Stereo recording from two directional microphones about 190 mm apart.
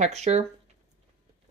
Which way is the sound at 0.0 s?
35° right (ahead or behind).